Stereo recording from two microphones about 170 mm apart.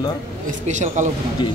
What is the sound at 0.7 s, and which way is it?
Speech, 45° right (ahead or behind).